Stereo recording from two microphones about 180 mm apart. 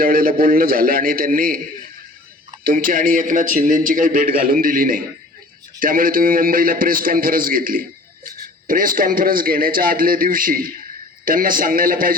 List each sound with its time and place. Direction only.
0.0 s a man's voice: 55° right (ahead or behind)
2.6 s a man's voice: 50° right (ahead or behind)